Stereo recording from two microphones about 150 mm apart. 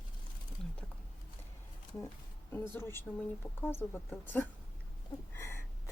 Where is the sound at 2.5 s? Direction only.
15° left (ahead or behind).